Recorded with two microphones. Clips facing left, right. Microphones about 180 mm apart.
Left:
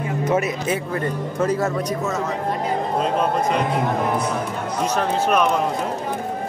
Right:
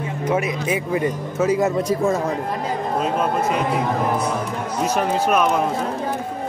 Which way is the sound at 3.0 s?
5° right (ahead or behind).